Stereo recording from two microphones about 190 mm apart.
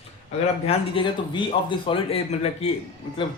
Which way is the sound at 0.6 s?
25° left (ahead or behind).